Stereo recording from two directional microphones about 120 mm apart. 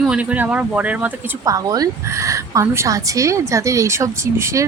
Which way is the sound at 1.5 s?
30° right (ahead or behind).